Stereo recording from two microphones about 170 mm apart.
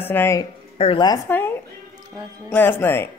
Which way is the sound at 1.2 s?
10° left (ahead or behind).